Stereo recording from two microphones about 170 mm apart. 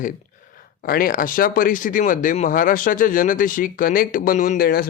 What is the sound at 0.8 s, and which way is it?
Speech, 55° left (ahead or behind).